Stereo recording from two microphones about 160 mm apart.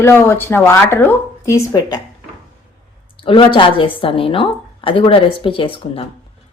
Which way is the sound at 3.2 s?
30° left (ahead or behind).